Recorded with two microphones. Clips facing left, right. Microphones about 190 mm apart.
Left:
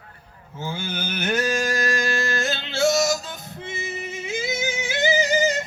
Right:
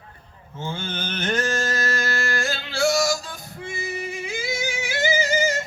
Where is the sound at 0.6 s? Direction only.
10° left (ahead or behind).